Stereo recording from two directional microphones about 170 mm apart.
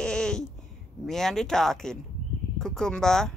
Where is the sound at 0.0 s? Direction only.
5° left (ahead or behind).